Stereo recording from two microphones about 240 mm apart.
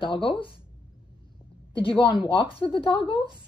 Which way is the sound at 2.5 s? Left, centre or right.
Left.